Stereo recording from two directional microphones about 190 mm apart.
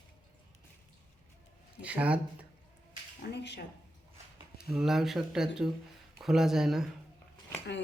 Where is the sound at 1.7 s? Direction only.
5° right (ahead or behind).